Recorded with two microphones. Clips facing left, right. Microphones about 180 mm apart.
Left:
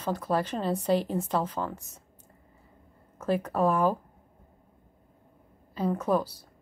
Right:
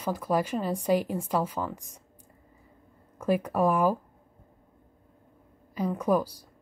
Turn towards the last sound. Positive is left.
turn(degrees=-10)  # may be behind; listen again after turning